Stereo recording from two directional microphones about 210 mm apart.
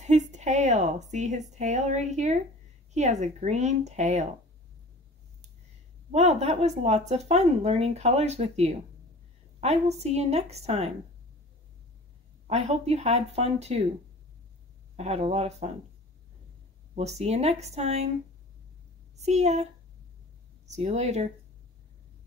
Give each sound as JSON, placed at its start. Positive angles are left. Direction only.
{"t": 0.0, "sound": "a sound", "side_deg": -35}
{"t": 1.5, "sound": "speech", "side_deg": -35}
{"t": 6.1, "sound": "speech", "side_deg": -30}
{"t": 12.4, "sound": "speech", "side_deg": -30}
{"t": 15.0, "sound": "speech", "side_deg": -30}
{"t": 16.9, "sound": "speech", "side_deg": -30}
{"t": 19.1, "sound": "speech", "side_deg": -30}
{"t": 20.7, "sound": "speech", "side_deg": -30}